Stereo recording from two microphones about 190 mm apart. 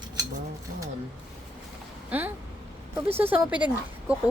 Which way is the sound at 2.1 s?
10° right (ahead or behind).